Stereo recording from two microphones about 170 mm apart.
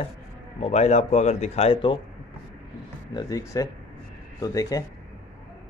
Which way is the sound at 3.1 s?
25° left (ahead or behind).